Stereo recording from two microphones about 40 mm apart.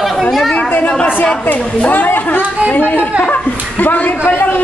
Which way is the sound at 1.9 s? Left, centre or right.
Left.